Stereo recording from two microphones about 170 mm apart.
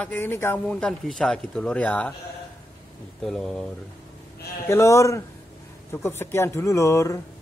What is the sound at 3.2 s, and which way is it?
Speech, 5° left (ahead or behind).